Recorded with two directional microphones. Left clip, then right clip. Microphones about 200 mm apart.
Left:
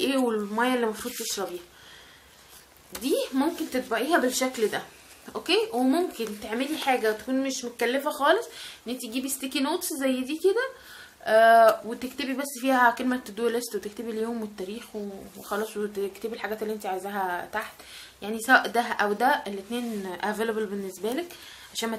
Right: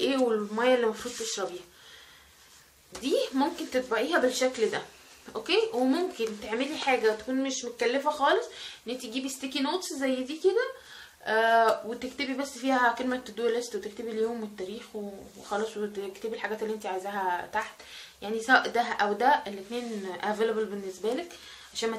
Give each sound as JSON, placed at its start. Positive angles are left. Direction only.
{"t": 0.0, "sound": "speech", "side_deg": 50}
{"t": 3.0, "sound": "speech", "side_deg": 45}
{"t": 15.5, "sound": "speech", "side_deg": 45}